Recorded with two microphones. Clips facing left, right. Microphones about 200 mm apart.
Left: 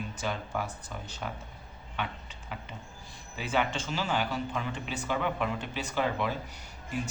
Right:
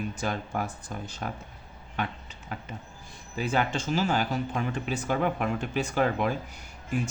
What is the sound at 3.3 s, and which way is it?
Speech, 40° right (ahead or behind).